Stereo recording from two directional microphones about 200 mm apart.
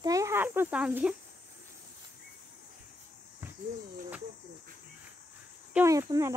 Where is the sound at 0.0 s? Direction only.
15° right (ahead or behind).